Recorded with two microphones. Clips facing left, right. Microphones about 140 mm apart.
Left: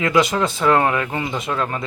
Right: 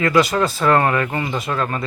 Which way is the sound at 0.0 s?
20° left (ahead or behind).